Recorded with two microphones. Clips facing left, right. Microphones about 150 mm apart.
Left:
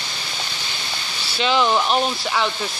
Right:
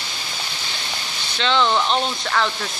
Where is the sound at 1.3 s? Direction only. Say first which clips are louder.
Left 1 dB; 10° left (ahead or behind).